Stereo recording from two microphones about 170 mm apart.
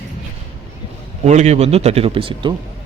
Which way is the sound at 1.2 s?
40° right (ahead or behind).